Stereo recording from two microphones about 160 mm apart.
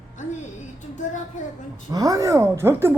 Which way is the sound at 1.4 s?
50° left (ahead or behind).